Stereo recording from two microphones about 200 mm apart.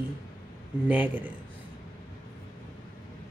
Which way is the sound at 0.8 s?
10° right (ahead or behind).